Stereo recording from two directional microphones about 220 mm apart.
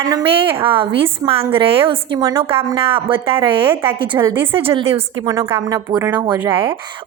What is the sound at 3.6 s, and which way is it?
Speech, 10° right (ahead or behind).